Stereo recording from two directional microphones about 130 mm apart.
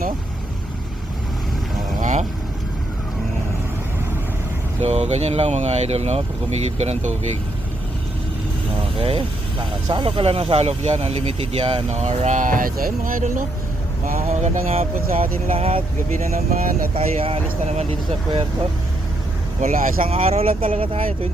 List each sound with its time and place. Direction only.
2.0 s boat: 70° right (ahead or behind)
4.8 s speech: 60° right (ahead or behind)
9.0 s speech: 45° right (ahead or behind); by 13.4 s 90° right
14.1 s speech: 80° right
15.1 s speech: 90° right
15.5 s speech: 45° right (ahead or behind)
16.6 s speech: 90° right
16.9 s speech: 45° right (ahead or behind)
19.6 s speech: 90° right
20.1 s speech: 50° right (ahead or behind)